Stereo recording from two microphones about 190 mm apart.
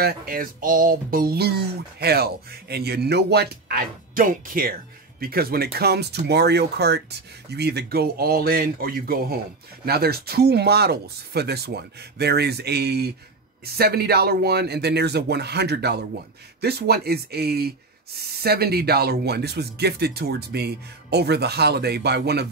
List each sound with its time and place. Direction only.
0.0 s speech: 50° right (ahead or behind)